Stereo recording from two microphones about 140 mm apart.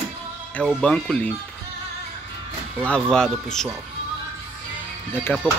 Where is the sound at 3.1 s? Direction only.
5° left (ahead or behind).